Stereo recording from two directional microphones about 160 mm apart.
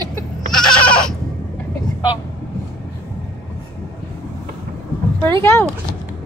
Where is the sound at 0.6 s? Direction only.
5° left (ahead or behind).